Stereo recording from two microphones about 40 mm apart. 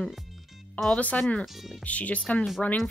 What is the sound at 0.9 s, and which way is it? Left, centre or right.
Speech, left.